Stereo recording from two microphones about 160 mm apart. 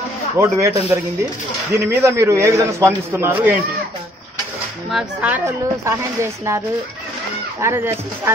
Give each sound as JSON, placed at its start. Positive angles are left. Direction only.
{"t": 0.4, "sound": "a man's voice", "side_deg": -20}
{"t": 4.9, "sound": "a man's voice", "side_deg": -10}
{"t": 7.6, "sound": "a man's voice", "side_deg": -15}